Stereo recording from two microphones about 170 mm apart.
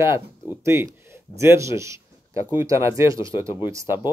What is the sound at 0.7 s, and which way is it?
Speech, 15° right (ahead or behind).